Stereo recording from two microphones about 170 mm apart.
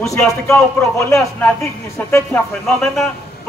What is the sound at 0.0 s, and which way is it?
A man's voice, 15° left (ahead or behind).